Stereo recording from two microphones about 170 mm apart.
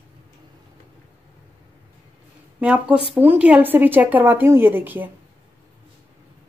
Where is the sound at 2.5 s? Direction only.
5° right (ahead or behind).